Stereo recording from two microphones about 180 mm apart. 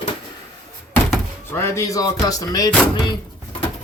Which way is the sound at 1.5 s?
15° left (ahead or behind).